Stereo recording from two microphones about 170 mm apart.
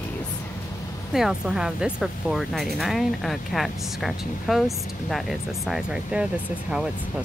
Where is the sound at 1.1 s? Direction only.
5° right (ahead or behind).